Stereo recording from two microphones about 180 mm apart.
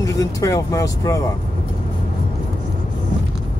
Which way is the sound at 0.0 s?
20° left (ahead or behind).